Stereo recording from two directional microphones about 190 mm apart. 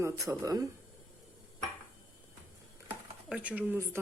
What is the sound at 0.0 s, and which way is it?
Speech, 15° right (ahead or behind).